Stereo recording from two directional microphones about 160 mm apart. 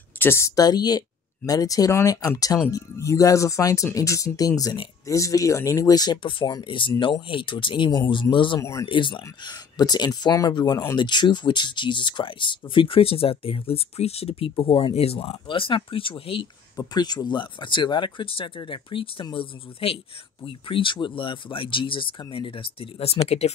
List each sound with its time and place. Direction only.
0.2 s speech: 15° left (ahead or behind); by 8.5 s 30° left (ahead or behind)
8.5 s speech: 20° left (ahead or behind)
8.8 s speech: 30° left (ahead or behind)